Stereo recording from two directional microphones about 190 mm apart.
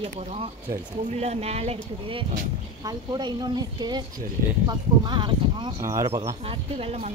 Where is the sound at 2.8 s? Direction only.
20° right (ahead or behind).